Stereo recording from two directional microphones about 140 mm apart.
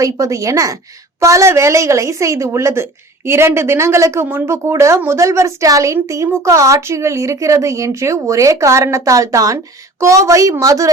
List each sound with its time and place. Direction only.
0.0 s a woman's voice: 25° right (ahead or behind)